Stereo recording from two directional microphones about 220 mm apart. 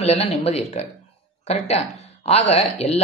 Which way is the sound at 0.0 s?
30° left (ahead or behind).